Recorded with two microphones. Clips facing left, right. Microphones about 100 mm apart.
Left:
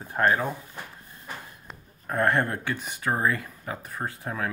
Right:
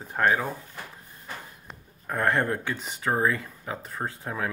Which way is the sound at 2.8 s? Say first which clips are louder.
Right 1 dB; 25° right (ahead or behind).